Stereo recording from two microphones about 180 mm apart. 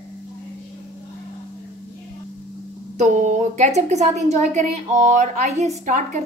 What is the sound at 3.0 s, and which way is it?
A woman's voice, 40° right (ahead or behind).